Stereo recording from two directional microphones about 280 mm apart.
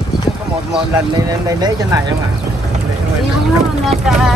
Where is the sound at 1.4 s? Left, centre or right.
Centre.